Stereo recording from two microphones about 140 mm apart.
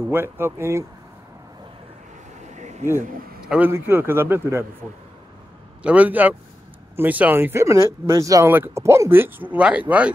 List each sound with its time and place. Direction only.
0.1 s speech: 15° right (ahead or behind)
2.4 s a sound: 55° right (ahead or behind)
3.0 s a man's voice: 80° right
3.4 s speech: 10° right (ahead or behind)
5.8 s speech: 10° right (ahead or behind)